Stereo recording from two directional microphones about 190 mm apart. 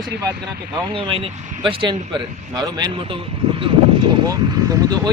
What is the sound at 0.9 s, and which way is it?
Speech, 30° right (ahead or behind).